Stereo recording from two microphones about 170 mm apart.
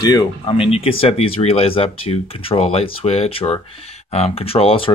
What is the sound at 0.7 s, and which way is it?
Speech, 35° left (ahead or behind).